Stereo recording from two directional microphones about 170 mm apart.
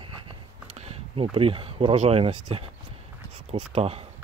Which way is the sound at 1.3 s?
30° right (ahead or behind).